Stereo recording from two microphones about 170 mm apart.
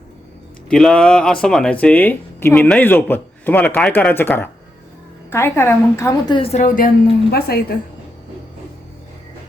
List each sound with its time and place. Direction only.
0.7 s a man's voice: 5° left (ahead or behind); by 7.8 s 65° left (ahead or behind)